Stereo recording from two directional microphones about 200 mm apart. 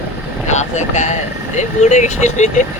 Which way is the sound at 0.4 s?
35° left (ahead or behind).